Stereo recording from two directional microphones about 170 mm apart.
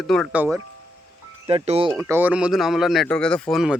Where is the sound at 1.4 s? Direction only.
35° right (ahead or behind).